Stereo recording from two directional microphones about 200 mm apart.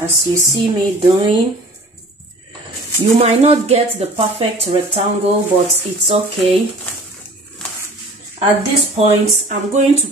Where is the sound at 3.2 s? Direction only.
30° right (ahead or behind).